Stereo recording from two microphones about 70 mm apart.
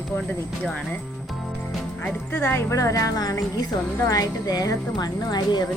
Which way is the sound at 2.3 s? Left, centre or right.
Left.